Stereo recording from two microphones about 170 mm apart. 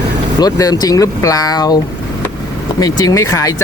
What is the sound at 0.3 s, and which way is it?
Speech, 20° left (ahead or behind).